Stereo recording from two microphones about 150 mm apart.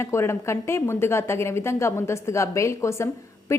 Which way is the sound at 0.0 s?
15° left (ahead or behind).